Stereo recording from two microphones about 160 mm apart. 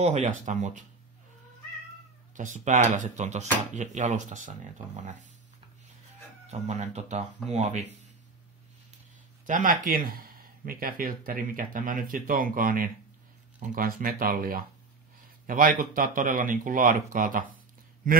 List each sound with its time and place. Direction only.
0.0 s speech: 50° right (ahead or behind)
2.3 s speech: 50° right (ahead or behind)
6.5 s speech: 45° right (ahead or behind)
9.5 s speech: 55° right (ahead or behind)